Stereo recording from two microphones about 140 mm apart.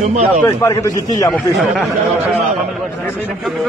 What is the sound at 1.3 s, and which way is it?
Speech, centre (ahead or behind).